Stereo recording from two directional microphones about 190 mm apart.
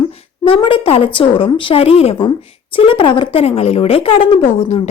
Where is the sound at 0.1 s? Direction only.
30° left (ahead or behind).